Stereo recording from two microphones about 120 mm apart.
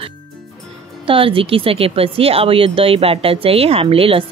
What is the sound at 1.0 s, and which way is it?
Speech, 50° right (ahead or behind).